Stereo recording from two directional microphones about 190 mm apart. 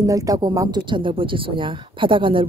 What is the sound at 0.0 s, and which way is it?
Speech, 20° right (ahead or behind).